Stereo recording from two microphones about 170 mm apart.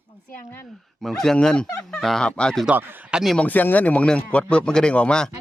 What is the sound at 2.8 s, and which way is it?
Speech, 10° right (ahead or behind).